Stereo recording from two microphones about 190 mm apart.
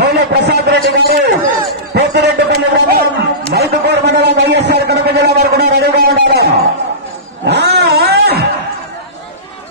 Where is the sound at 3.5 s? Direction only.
60° right (ahead or behind).